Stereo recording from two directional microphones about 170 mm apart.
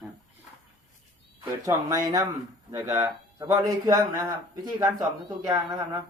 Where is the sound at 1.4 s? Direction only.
20° right (ahead or behind).